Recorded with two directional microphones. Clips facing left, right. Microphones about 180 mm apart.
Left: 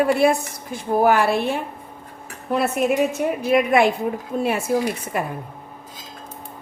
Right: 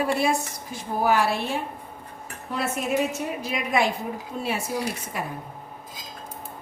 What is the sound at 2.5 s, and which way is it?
A woman's voice, 60° left (ahead or behind).